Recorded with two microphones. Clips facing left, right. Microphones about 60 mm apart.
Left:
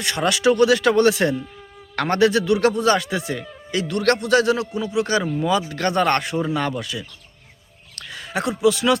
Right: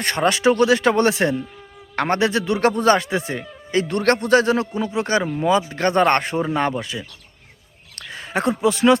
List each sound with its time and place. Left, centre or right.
0.0 s speech: right